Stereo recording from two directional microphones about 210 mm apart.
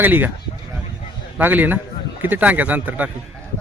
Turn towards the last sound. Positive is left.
turn(degrees=-5)  # may be behind; listen again after turning